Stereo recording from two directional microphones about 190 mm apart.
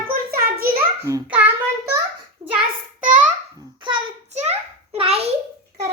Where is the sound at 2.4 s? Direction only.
15° right (ahead or behind).